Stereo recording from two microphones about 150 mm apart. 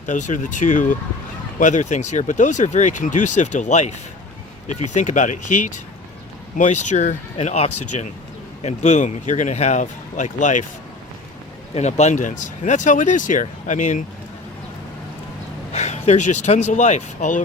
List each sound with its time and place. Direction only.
0.0 s speech: 55° left (ahead or behind)
4.9 s speech: 55° left (ahead or behind)
11.7 s speech: 50° left (ahead or behind)
15.7 s speech: 45° left (ahead or behind)